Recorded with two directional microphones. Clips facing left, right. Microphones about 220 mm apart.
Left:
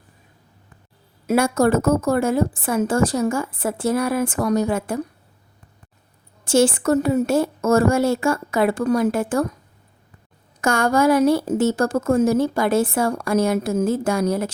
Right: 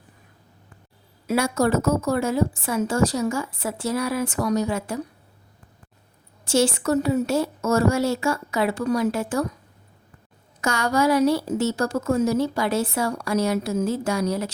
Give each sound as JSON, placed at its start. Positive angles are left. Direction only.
{"t": 1.3, "sound": "a woman's voice", "side_deg": 50}
{"t": 6.4, "sound": "a woman's voice", "side_deg": 50}
{"t": 10.6, "sound": "a woman's voice", "side_deg": 50}